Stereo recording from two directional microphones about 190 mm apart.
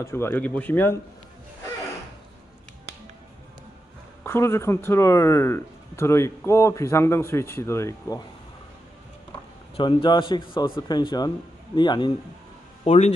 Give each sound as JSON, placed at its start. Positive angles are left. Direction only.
{"t": 0.0, "sound": "speech", "side_deg": 10}
{"t": 4.2, "sound": "speech", "side_deg": 15}
{"t": 9.8, "sound": "a man's voice", "side_deg": 25}
{"t": 12.8, "sound": "speech", "side_deg": 35}